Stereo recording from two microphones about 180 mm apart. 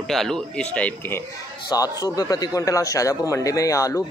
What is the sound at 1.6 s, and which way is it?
Speech, 20° left (ahead or behind).